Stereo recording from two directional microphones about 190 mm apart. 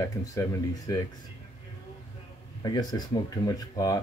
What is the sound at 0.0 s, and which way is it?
Speech, 15° left (ahead or behind).